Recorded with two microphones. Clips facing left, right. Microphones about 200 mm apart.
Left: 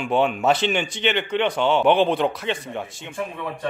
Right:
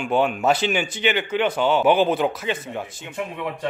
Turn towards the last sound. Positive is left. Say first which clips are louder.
# right 2 dB
turn(degrees=-15)  # may be behind; listen again after turning